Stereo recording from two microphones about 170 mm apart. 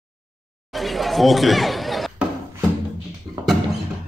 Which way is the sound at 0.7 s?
Centre (ahead or behind).